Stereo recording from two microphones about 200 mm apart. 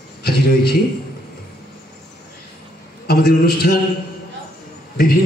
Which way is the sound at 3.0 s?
50° left (ahead or behind).